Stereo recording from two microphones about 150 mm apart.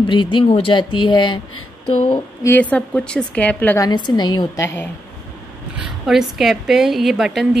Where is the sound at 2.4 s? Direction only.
10° left (ahead or behind).